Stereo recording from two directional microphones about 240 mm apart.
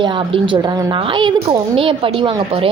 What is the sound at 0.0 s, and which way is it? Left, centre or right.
A child's voice, centre.